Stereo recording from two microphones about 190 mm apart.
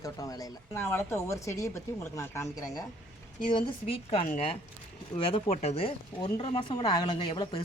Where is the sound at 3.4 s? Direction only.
25° left (ahead or behind).